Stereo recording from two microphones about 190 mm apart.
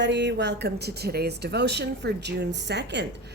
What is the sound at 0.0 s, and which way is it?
Speech, 65° right (ahead or behind).